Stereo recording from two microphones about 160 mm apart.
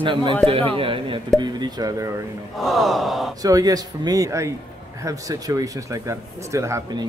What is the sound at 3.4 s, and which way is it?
Speech, 25° right (ahead or behind).